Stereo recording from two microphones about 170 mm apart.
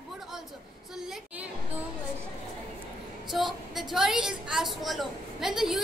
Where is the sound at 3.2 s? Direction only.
Centre (ahead or behind).